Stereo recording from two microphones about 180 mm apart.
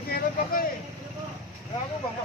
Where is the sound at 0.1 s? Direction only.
50° left (ahead or behind).